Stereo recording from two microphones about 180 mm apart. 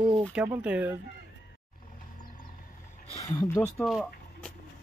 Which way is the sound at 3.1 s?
20° left (ahead or behind).